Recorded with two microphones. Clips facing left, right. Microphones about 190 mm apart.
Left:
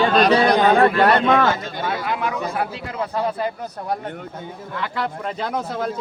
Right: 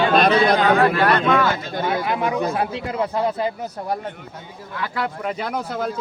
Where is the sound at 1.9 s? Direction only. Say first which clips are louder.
Right 3 dB; 20° right (ahead or behind).